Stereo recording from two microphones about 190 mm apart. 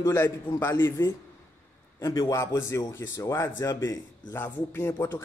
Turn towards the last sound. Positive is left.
turn(degrees=10)  # may be behind; listen again after turning